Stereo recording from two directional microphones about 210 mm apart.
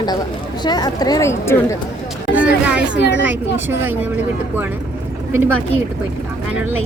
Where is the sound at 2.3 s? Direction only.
5° right (ahead or behind).